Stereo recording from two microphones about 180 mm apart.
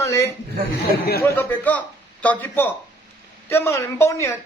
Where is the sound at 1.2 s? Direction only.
10° left (ahead or behind).